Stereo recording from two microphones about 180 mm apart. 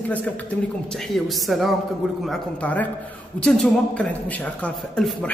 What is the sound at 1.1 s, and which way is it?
A woman's voice, centre (ahead or behind).